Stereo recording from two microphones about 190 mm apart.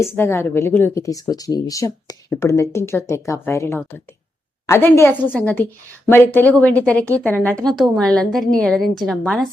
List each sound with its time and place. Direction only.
0.0 s a woman's voice: 15° left (ahead or behind)